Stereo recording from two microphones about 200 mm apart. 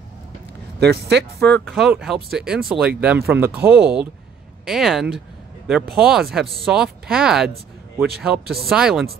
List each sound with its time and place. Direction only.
0.7 s speech: 55° right (ahead or behind)
1.4 s speech: 5° left (ahead or behind)